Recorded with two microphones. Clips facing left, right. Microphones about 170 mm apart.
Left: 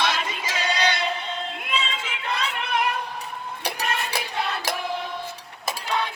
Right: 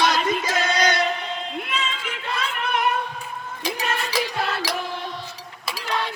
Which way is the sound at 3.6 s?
60° left (ahead or behind).